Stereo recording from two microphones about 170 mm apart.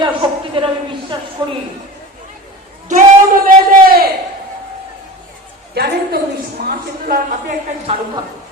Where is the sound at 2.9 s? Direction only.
55° right (ahead or behind).